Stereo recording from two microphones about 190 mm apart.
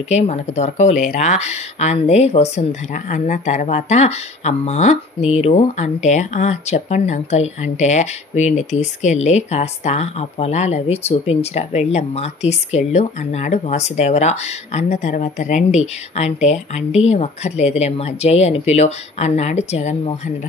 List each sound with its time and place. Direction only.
0.1 s speech: 35° left (ahead or behind)